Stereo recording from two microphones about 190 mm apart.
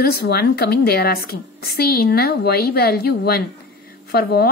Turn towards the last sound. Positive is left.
turn(degrees=50)  # may be behind; listen again after turning